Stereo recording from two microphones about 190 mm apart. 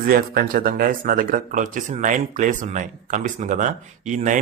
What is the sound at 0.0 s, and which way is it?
Speech, 50° right (ahead or behind).